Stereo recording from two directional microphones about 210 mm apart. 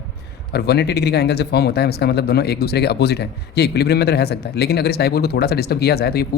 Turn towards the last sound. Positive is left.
turn(degrees=50)  # may be behind; listen again after turning